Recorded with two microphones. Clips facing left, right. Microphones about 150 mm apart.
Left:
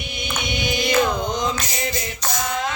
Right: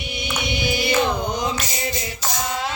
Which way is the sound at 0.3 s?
10° right (ahead or behind).